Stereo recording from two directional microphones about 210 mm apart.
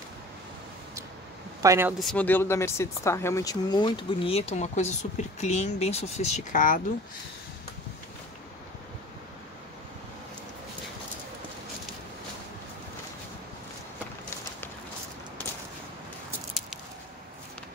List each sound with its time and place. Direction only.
1.6 s speech: 10° right (ahead or behind)
2.0 s speech: 5° left (ahead or behind); by 6.8 s 40° left (ahead or behind)